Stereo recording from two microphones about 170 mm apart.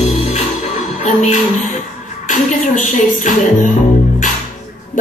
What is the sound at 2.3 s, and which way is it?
Music, 50° left (ahead or behind).